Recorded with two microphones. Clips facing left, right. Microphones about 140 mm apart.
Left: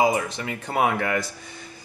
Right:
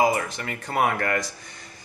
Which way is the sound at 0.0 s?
15° left (ahead or behind).